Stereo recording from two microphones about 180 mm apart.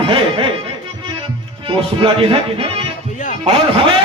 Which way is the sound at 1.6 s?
30° right (ahead or behind).